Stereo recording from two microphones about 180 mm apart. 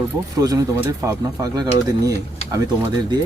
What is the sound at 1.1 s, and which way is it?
Speech, 20° right (ahead or behind).